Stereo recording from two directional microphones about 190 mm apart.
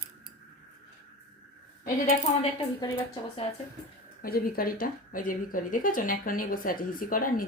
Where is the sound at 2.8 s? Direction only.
20° left (ahead or behind).